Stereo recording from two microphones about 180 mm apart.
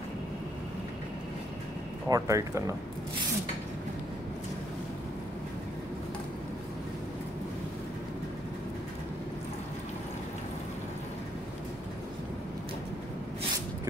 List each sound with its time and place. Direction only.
2.0 s speech: 20° right (ahead or behind)